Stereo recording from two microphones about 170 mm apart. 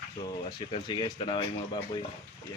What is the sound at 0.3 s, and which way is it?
Speech, 25° left (ahead or behind).